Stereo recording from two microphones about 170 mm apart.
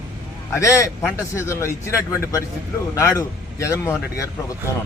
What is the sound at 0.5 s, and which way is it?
A man's voice, 20° left (ahead or behind).